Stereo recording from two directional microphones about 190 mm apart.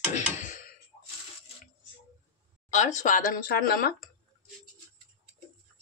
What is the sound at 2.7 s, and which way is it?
Speech, 40° left (ahead or behind).